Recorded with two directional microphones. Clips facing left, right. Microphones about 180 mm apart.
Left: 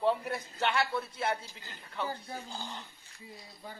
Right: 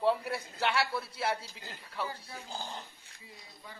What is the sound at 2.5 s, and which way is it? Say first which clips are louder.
Speech: right 1 dB; 35° right (ahead or behind).